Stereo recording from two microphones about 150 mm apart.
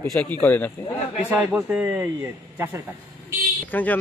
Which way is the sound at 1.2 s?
15° right (ahead or behind).